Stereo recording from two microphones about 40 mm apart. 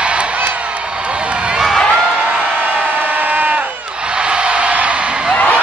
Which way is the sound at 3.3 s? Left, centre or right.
Right.